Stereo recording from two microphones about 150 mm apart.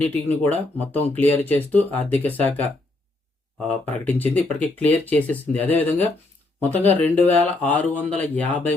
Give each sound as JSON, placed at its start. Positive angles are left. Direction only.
{"t": 0.0, "sound": "speech", "side_deg": 10}
{"t": 3.8, "sound": "speech", "side_deg": 10}